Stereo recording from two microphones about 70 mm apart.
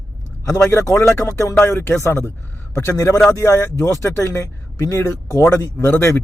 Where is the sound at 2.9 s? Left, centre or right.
Left.